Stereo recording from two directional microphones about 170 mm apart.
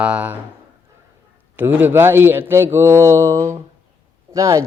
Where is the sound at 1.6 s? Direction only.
10° right (ahead or behind).